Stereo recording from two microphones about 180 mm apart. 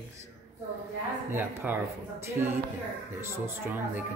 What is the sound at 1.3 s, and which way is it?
Speech, 10° right (ahead or behind).